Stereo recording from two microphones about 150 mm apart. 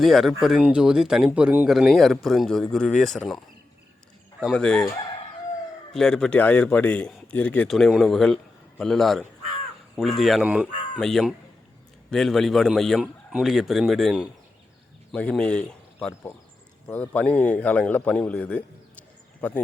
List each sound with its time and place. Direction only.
0.0 s speech: centre (ahead or behind)
5.9 s a man's voice: 5° left (ahead or behind)